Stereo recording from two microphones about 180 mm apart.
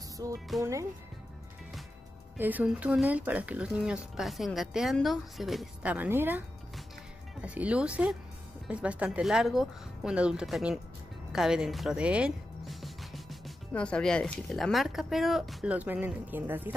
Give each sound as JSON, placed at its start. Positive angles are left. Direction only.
{"t": 0.2, "sound": "speech", "side_deg": -20}
{"t": 2.3, "sound": "speech", "side_deg": -10}
{"t": 7.4, "sound": "speech", "side_deg": -5}